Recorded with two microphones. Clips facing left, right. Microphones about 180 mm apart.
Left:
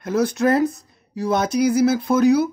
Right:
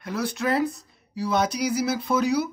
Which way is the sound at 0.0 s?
45° left (ahead or behind).